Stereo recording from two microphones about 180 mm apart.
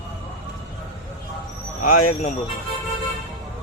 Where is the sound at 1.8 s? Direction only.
45° left (ahead or behind).